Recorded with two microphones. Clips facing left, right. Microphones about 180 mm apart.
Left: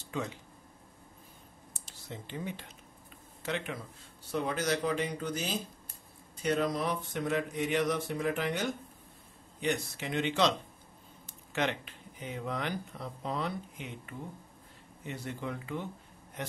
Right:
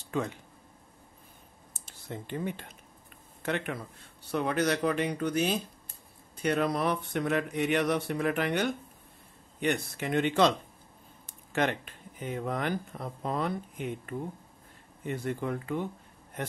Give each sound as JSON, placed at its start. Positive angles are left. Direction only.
{"t": 0.1, "sound": "speech", "side_deg": -55}
{"t": 1.7, "sound": "clicking", "side_deg": -55}
{"t": 3.4, "sound": "a sound", "side_deg": -55}
{"t": 9.6, "sound": "speech", "side_deg": -55}
{"t": 11.5, "sound": "a man's voice", "side_deg": -50}